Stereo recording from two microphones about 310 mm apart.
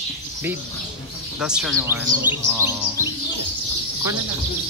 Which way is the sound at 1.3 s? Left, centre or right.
Centre.